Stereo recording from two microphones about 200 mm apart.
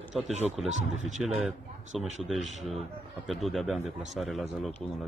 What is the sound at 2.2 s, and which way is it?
A man's voice, centre (ahead or behind).